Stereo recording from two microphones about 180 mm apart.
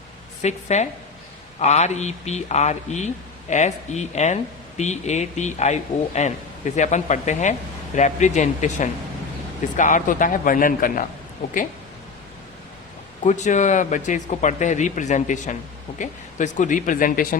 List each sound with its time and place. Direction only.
0.4 s speech: 40° left (ahead or behind)
13.2 s speech: 40° left (ahead or behind)